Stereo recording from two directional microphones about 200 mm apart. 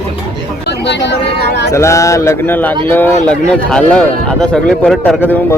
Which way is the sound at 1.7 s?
15° left (ahead or behind).